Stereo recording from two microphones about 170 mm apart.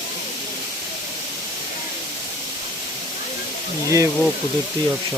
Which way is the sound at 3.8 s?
20° right (ahead or behind).